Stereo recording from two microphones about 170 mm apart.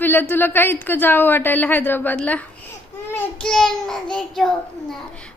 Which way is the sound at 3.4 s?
5° left (ahead or behind).